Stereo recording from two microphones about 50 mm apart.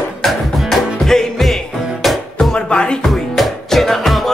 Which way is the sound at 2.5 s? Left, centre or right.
Centre.